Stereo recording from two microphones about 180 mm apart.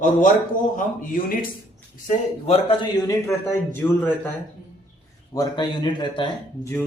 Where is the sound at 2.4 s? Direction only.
35° left (ahead or behind).